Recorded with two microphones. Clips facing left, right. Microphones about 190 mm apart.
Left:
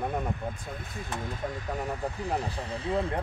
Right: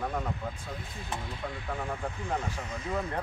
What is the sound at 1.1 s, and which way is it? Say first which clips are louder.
Speech: left 4 dB; 45° left (ahead or behind).